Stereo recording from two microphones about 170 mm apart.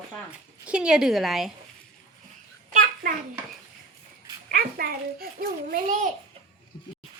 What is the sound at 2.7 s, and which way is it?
Speech, 55° right (ahead or behind).